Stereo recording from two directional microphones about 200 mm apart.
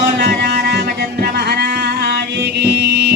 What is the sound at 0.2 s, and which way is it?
Music, 55° right (ahead or behind).